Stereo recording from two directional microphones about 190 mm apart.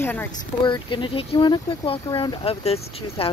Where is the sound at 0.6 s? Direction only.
25° left (ahead or behind).